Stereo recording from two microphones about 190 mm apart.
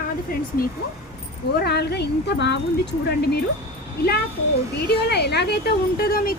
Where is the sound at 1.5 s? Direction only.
60° left (ahead or behind).